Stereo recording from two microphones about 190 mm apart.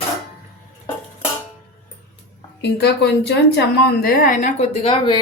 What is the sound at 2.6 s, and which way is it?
A woman's voice, 60° left (ahead or behind).